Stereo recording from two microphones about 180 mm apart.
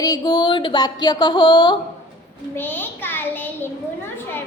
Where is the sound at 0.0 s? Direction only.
20° left (ahead or behind).